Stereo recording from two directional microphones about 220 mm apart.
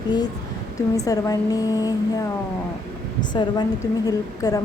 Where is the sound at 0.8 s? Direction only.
15° left (ahead or behind).